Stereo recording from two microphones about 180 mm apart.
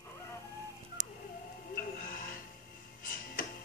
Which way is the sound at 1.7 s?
55° left (ahead or behind).